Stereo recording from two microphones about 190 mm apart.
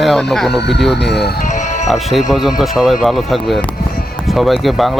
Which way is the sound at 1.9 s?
Centre (ahead or behind).